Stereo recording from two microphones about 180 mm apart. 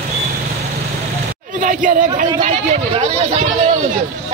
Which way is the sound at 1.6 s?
50° right (ahead or behind).